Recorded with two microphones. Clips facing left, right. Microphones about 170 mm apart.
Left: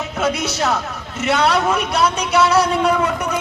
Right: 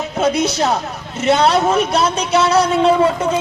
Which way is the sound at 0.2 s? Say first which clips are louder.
Right 4 dB; 20° right (ahead or behind).